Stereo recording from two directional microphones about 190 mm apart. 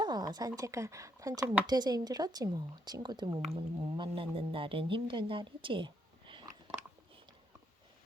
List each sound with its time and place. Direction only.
0.0 s a woman's voice: 20° right (ahead or behind)